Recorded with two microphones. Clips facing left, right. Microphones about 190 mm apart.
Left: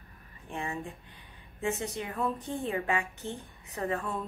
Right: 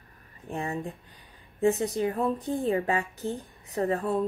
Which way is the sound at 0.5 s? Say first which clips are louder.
Right 4 dB; 40° right (ahead or behind).